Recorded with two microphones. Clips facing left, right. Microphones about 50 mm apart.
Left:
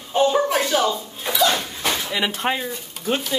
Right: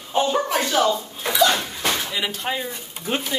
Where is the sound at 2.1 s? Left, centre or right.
Left.